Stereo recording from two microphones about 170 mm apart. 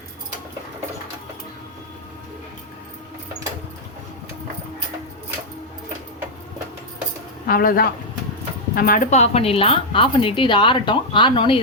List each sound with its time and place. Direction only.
7.4 s a woman's voice: 55° left (ahead or behind); by 11.6 s 30° left (ahead or behind)